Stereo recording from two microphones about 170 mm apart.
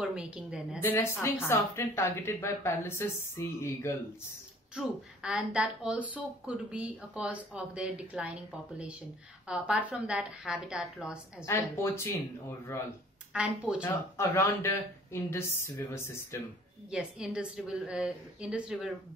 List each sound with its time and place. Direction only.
0.0 s a woman's voice: 5° right (ahead or behind)
0.7 s speech: 15° left (ahead or behind)
4.7 s a woman's voice: 5° right (ahead or behind)
11.4 s speech: 15° left (ahead or behind)
13.3 s a woman's voice: 5° right (ahead or behind)
13.8 s speech: 15° left (ahead or behind)
16.9 s a woman's voice: 5° right (ahead or behind)